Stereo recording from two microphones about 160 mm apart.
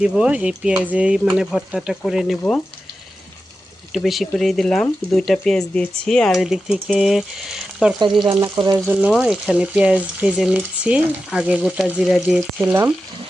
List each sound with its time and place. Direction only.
0.0 s speech: 5° right (ahead or behind)
3.9 s speech: centre (ahead or behind)
8.2 s speech: 30° right (ahead or behind)
8.9 s speech: 5° right (ahead or behind)